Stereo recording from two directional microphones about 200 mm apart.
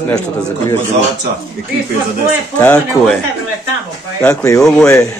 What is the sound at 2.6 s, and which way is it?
Speech, 5° left (ahead or behind).